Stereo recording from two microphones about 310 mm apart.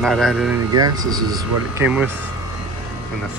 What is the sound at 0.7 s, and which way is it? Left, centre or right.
Speech, centre.